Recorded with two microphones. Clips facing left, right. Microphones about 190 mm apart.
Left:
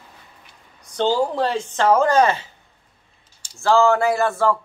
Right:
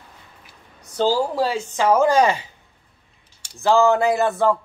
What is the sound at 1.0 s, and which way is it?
Speech, 5° right (ahead or behind).